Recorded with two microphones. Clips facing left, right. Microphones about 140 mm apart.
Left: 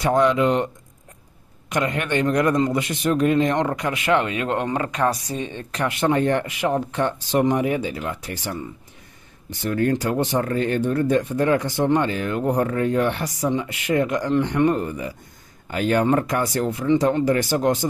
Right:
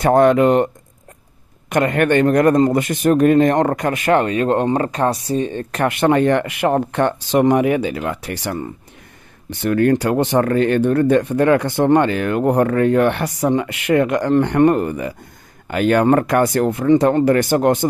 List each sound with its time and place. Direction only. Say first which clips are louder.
0.0 s speech: right 6 dB; 50° right (ahead or behind)
1.7 s speech: right 7 dB; 55° right (ahead or behind)